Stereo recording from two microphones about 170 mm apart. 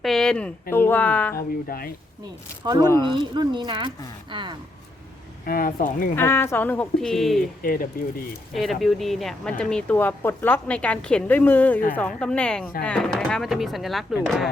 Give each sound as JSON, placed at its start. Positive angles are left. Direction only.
{"t": 0.0, "sound": "a sound", "side_deg": 5}
{"t": 0.7, "sound": "speech", "side_deg": 10}
{"t": 1.7, "sound": "speech", "side_deg": 60}
{"t": 2.8, "sound": "speech", "side_deg": 15}
{"t": 3.1, "sound": "speech", "side_deg": -30}
{"t": 5.5, "sound": "speech", "side_deg": 55}
{"t": 6.1, "sound": "speech", "side_deg": 15}
{"t": 7.6, "sound": "speech", "side_deg": 55}
{"t": 8.5, "sound": "speech", "side_deg": 0}